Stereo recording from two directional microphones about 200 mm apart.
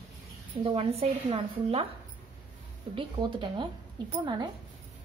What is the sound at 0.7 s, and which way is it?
A woman's voice, 30° right (ahead or behind).